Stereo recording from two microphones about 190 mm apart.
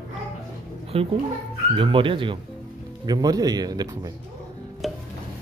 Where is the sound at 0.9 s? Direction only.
30° right (ahead or behind).